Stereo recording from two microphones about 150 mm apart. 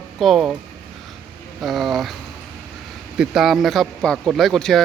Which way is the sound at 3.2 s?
Centre (ahead or behind).